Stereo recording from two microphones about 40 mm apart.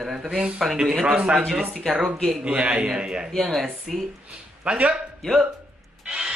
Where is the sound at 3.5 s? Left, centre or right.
Centre.